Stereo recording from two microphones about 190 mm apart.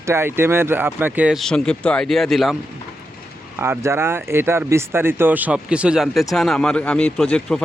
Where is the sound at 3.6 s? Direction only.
15° right (ahead or behind); by 7.6 s 5° left (ahead or behind).